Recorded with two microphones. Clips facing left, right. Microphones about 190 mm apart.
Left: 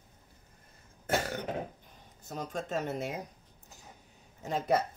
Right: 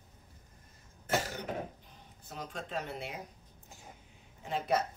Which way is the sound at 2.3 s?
45° left (ahead or behind).